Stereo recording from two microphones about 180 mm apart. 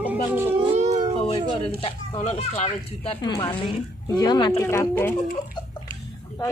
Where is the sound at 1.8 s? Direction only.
30° left (ahead or behind).